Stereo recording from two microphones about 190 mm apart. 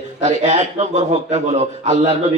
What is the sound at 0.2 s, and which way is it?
A man's voice, 35° right (ahead or behind).